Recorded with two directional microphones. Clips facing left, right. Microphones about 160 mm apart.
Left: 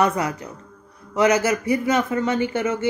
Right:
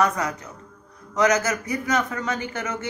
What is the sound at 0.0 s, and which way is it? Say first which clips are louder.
Speech: left 2 dB; 30° left (ahead or behind).